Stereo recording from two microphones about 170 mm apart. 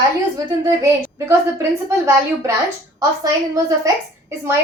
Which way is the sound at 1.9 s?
15° right (ahead or behind).